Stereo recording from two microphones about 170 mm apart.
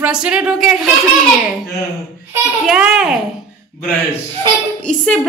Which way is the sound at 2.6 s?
5° right (ahead or behind).